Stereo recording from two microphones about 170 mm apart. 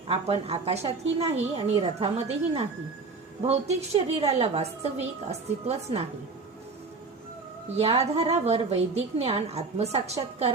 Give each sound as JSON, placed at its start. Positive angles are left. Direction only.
{"t": 0.1, "sound": "a woman's voice", "side_deg": -35}
{"t": 7.8, "sound": "a woman's voice", "side_deg": -35}